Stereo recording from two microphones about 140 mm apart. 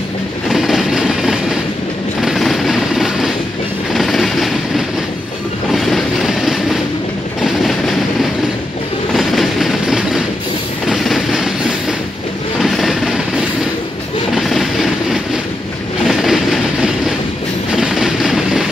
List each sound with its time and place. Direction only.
0.5 s train: centre (ahead or behind)
2.2 s vehicle: centre (ahead or behind)
3.9 s train: centre (ahead or behind)
7.4 s vehicle: centre (ahead or behind)
9.1 s train: centre (ahead or behind)
12.5 s vehicle: centre (ahead or behind)
14.3 s a sound: centre (ahead or behind)
16.0 s train: centre (ahead or behind)